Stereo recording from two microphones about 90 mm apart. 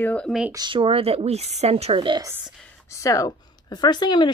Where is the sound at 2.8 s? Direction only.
35° left (ahead or behind); by 4.3 s 55° left (ahead or behind).